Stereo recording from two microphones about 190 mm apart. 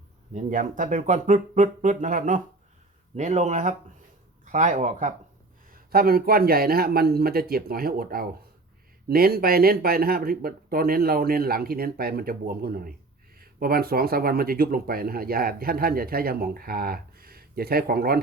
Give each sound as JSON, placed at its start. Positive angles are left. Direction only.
{"t": 0.3, "sound": "speech", "side_deg": -40}
{"t": 5.9, "sound": "speech", "side_deg": -50}